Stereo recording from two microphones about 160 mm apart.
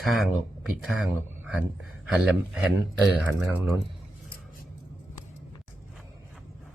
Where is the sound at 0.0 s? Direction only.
Centre (ahead or behind).